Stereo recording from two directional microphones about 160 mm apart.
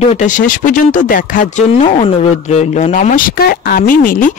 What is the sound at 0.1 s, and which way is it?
Speech, 50° left (ahead or behind).